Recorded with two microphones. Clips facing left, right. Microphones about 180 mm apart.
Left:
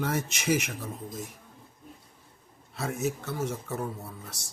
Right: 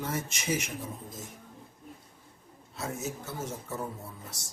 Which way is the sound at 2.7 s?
70° left (ahead or behind).